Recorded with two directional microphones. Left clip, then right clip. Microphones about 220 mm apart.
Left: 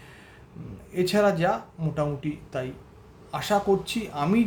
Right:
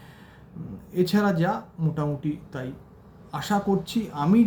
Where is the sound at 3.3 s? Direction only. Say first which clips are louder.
Left 3 dB; 15° left (ahead or behind).